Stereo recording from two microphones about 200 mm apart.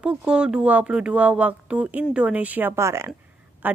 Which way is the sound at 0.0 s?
5° right (ahead or behind).